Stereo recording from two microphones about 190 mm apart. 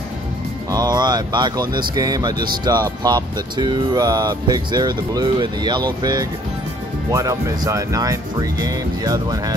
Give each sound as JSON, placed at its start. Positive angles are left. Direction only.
{"t": 0.7, "sound": "speech", "side_deg": -20}
{"t": 7.1, "sound": "speech", "side_deg": -15}